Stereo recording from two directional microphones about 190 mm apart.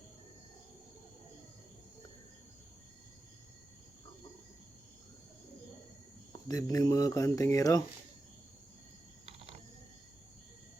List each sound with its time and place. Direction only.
6.5 s speech: 20° left (ahead or behind)